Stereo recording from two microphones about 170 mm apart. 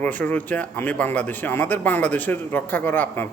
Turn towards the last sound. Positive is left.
turn(degrees=10)  # may be behind; listen again after turning